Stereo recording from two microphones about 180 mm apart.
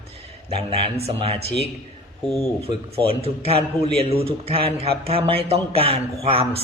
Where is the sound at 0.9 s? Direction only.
35° right (ahead or behind).